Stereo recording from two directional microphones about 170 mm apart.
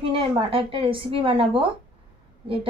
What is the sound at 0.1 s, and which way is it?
Speech, 30° right (ahead or behind).